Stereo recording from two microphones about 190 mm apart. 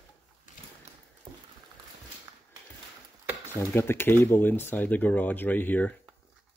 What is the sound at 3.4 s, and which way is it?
Speech, 10° left (ahead or behind).